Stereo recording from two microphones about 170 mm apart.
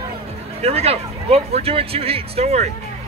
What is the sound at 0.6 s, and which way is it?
Speech, 35° right (ahead or behind).